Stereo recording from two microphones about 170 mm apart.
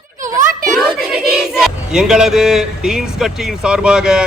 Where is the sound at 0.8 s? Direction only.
5° right (ahead or behind).